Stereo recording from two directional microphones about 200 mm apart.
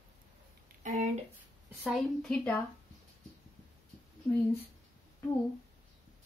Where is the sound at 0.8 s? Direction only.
40° right (ahead or behind).